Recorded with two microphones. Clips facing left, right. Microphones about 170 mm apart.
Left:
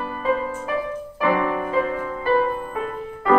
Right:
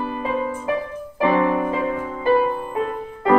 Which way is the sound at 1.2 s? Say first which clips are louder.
Right 3 dB; 25° right (ahead or behind).